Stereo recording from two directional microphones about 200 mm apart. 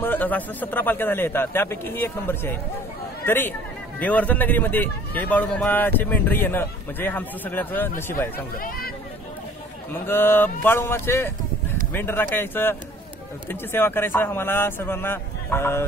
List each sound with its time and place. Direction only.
0.0 s speech: 10° left (ahead or behind)
8.5 s speech: 45° left (ahead or behind)
10.0 s speech: 10° left (ahead or behind)